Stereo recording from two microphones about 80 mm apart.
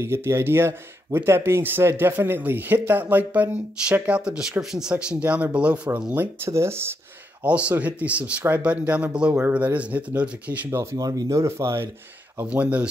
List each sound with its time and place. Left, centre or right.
0.0 s speech: right; by 5.8 s centre
6.1 s speech: right
7.4 s speech: centre
10.7 s speech: right
11.0 s speech: right
12.4 s speech: centre